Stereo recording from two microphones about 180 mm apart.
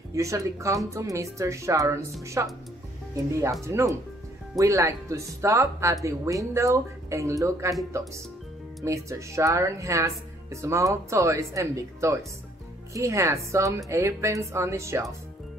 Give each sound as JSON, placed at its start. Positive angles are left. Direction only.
{"t": 0.1, "sound": "speech", "side_deg": -15}
{"t": 8.8, "sound": "speech", "side_deg": -15}